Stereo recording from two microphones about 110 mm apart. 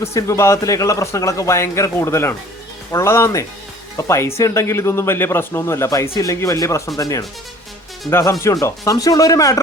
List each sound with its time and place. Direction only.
0.0 s speech: 25° left (ahead or behind)